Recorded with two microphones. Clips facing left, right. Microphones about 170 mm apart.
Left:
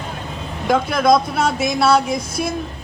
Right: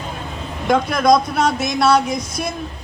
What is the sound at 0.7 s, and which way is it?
A woman's voice, 5° left (ahead or behind).